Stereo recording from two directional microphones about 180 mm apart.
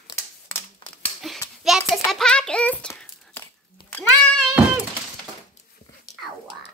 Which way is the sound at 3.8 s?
25° left (ahead or behind).